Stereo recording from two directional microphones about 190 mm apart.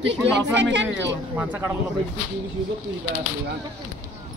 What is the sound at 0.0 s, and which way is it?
Speech, 70° right (ahead or behind).